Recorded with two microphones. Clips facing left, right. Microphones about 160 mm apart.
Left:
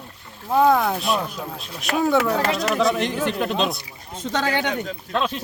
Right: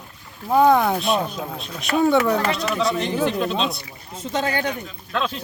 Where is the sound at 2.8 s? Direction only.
55° left (ahead or behind).